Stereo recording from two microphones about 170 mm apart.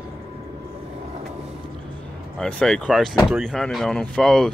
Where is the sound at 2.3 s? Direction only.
5° left (ahead or behind).